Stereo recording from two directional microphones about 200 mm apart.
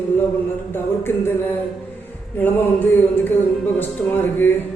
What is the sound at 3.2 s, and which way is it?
Speech, 10° left (ahead or behind).